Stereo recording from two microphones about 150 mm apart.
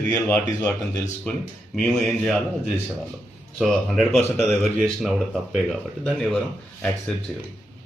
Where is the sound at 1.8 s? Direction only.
5° left (ahead or behind).